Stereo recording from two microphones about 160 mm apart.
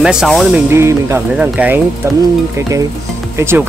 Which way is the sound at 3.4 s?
15° right (ahead or behind).